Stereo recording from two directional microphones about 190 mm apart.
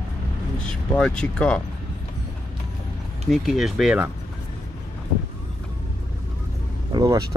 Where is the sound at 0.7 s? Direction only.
5° left (ahead or behind).